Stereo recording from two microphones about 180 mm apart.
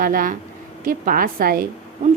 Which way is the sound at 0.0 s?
50° right (ahead or behind).